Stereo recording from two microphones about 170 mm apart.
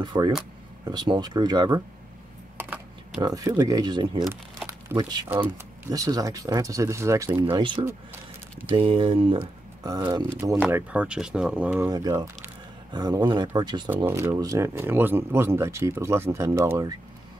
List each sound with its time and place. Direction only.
0.0 s speech: 25° right (ahead or behind)
2.5 s a sound: 5° right (ahead or behind)
3.2 s speech: 20° right (ahead or behind)
4.6 s speech: 15° right (ahead or behind)
7.4 s speech: 30° right (ahead or behind)
10.6 s speech: 10° right (ahead or behind)
11.9 s speech: 25° right (ahead or behind)
14.0 s speech: 15° right (ahead or behind)